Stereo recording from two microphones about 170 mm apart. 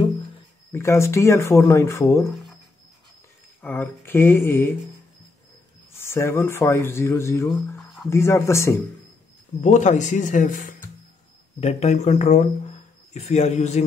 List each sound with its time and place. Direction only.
0.7 s speech: 15° left (ahead or behind)
3.6 s speech: 10° left (ahead or behind)
5.9 s speech: 15° left (ahead or behind)
9.6 s a man's voice: 45° left (ahead or behind)